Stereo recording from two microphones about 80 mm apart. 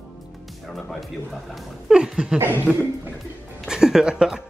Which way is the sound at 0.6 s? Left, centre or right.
Centre.